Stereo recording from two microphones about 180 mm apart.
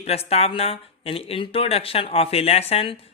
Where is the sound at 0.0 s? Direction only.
35° left (ahead or behind).